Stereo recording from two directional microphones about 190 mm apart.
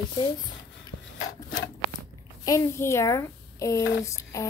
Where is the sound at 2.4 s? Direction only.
15° left (ahead or behind).